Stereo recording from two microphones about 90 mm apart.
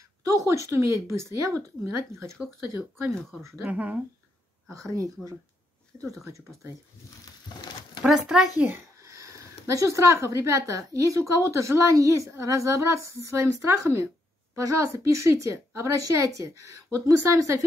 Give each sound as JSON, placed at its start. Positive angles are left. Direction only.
{"t": 0.3, "sound": "speech", "side_deg": -35}
{"t": 3.2, "sound": "speech", "side_deg": 5}
{"t": 3.6, "sound": "speech", "side_deg": -15}
{"t": 4.7, "sound": "speech", "side_deg": -35}
{"t": 8.0, "sound": "speech", "side_deg": -5}
{"t": 8.6, "sound": "speech", "side_deg": -30}